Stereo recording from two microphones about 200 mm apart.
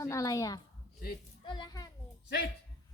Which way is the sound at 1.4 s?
25° left (ahead or behind).